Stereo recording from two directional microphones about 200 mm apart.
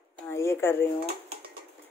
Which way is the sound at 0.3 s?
15° left (ahead or behind).